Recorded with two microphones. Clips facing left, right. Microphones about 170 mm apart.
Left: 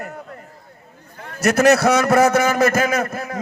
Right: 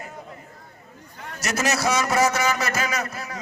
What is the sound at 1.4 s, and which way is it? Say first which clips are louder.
A man's voice: left 11 dB; 55° left (ahead or behind).